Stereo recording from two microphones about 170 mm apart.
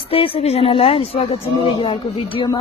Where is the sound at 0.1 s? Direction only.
35° left (ahead or behind).